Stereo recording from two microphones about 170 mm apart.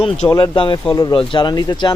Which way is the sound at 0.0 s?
25° left (ahead or behind).